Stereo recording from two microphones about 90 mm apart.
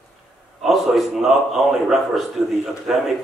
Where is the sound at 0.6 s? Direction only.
Centre (ahead or behind).